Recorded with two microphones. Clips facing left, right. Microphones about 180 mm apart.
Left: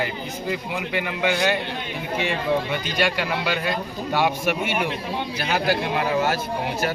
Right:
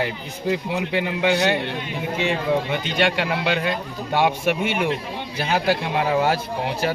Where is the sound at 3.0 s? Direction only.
25° right (ahead or behind).